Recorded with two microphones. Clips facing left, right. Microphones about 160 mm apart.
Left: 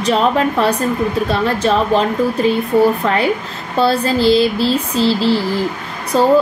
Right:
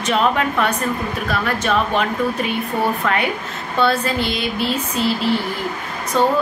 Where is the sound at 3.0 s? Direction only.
30° left (ahead or behind).